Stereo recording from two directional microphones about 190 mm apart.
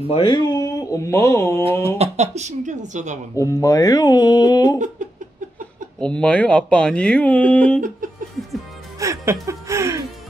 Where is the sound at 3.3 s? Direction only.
15° left (ahead or behind).